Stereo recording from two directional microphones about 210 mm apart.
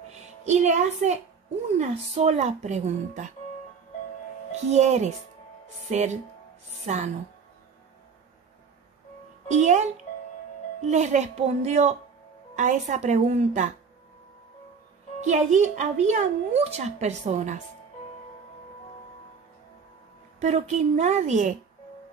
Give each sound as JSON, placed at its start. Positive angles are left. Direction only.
{"t": 0.5, "sound": "a woman's voice", "side_deg": -35}
{"t": 4.6, "sound": "a woman's voice", "side_deg": -30}
{"t": 9.5, "sound": "a woman's voice", "side_deg": -35}
{"t": 10.9, "sound": "a woman's voice", "side_deg": -35}
{"t": 15.1, "sound": "a woman's voice", "side_deg": -35}
{"t": 20.3, "sound": "a woman's voice", "side_deg": -30}